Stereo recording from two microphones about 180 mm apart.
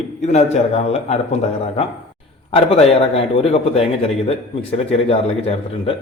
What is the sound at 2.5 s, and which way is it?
A man's voice, 35° left (ahead or behind).